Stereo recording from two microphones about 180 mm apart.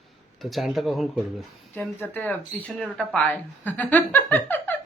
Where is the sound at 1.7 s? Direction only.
10° left (ahead or behind).